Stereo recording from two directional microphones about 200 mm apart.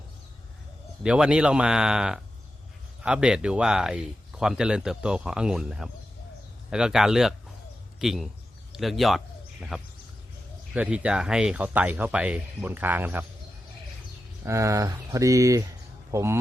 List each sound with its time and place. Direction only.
1.0 s speech: 5° right (ahead or behind)
14.4 s speech: 15° right (ahead or behind)